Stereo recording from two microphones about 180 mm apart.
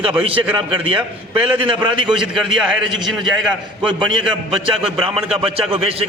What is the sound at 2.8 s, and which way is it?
A man's voice, 25° right (ahead or behind).